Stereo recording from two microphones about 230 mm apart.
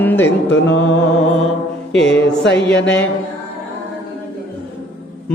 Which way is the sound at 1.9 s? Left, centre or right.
Left.